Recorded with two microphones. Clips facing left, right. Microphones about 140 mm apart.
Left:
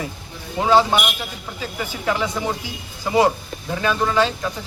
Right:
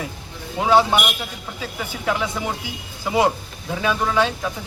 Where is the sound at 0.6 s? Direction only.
5° right (ahead or behind).